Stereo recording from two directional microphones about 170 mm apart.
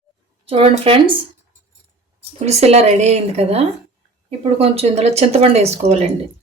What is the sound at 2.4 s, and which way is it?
Speech, 40° right (ahead or behind).